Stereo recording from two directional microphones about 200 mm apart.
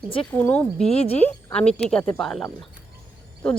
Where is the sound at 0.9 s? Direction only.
30° left (ahead or behind).